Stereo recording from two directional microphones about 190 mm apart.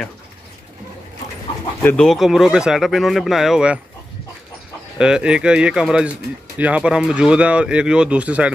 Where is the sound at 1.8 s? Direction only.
5° left (ahead or behind).